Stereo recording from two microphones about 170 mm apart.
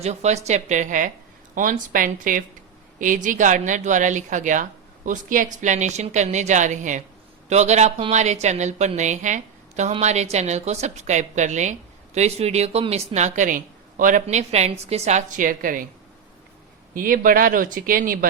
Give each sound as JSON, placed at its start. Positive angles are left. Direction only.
{"t": 0.0, "sound": "speech", "side_deg": -40}
{"t": 16.9, "sound": "speech", "side_deg": -55}